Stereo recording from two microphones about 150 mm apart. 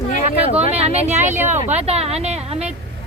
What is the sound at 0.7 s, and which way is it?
Speech, 45° right (ahead or behind).